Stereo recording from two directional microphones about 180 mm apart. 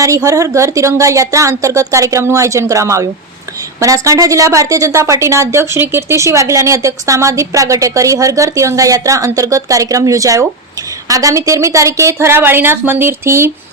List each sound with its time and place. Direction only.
0.0 s a woman's voice: 15° right (ahead or behind)